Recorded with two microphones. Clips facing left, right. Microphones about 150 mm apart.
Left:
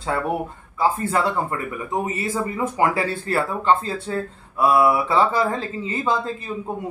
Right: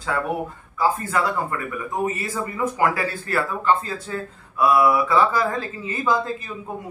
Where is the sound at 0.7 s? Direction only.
25° left (ahead or behind).